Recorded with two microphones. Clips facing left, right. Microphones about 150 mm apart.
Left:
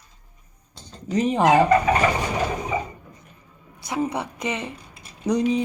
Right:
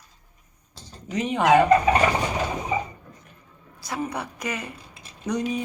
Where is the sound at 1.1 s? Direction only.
35° left (ahead or behind).